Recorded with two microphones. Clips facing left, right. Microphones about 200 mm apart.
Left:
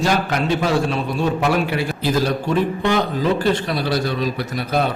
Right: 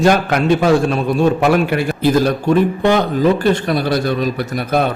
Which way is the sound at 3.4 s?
50° right (ahead or behind).